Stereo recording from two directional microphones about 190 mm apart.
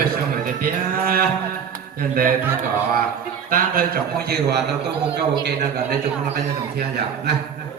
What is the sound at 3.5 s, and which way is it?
A man's voice, 50° right (ahead or behind).